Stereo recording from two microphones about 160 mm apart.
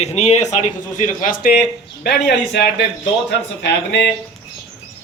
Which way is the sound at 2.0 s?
90° left.